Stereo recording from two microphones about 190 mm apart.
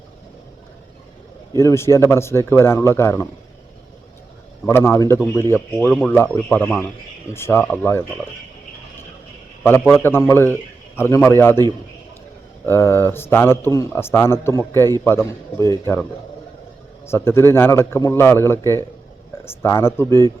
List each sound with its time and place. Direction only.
1.5 s a man's voice: 15° left (ahead or behind)
4.6 s a man's voice: 15° left (ahead or behind)
10.0 s a man's voice: 15° left (ahead or behind)
12.6 s a man's voice: 10° left (ahead or behind)
15.6 s speech: 20° right (ahead or behind)
17.1 s a man's voice: 15° left (ahead or behind)